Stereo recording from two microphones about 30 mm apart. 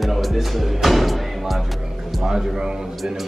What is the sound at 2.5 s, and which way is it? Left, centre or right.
Speech, right.